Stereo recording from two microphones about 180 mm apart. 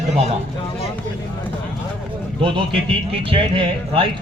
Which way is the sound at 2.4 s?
30° right (ahead or behind).